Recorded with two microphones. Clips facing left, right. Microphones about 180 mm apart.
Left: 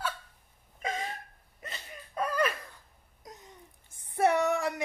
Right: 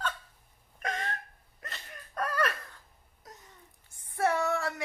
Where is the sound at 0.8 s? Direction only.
5° left (ahead or behind).